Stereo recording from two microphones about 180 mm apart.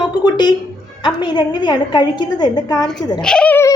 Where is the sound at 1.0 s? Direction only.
25° left (ahead or behind).